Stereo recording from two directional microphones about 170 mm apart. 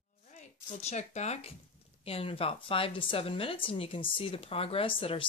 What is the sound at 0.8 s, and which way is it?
Speech, 40° left (ahead or behind).